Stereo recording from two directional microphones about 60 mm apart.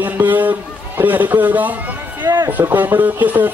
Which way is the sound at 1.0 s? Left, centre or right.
Right.